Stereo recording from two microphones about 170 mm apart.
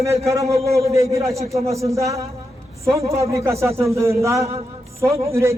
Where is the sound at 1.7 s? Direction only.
20° right (ahead or behind).